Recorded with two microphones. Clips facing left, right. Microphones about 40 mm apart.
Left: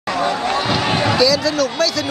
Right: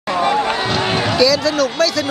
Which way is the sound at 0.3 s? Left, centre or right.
Right.